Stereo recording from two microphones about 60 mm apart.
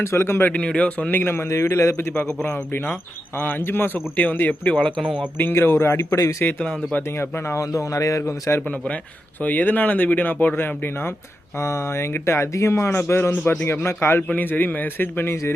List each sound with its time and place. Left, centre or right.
0.0 s a man's voice: left
0.5 s speech: left
1.2 s a man's voice: left
2.4 s speech: left
3.3 s a man's voice: left
4.7 s a man's voice: centre
5.4 s speech: left
6.1 s speech: left
7.2 s speech: left
7.6 s speech: left
8.3 s speech: left
9.4 s a man's voice: left
11.5 s a man's voice: left
14.3 s a man's voice: left